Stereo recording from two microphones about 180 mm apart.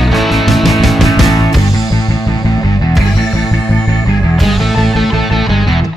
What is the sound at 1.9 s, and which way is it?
Music, 20° left (ahead or behind).